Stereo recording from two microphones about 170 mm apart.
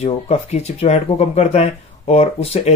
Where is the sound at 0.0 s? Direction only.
40° left (ahead or behind).